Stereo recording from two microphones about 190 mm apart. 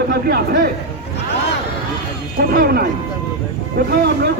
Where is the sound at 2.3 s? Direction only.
50° right (ahead or behind).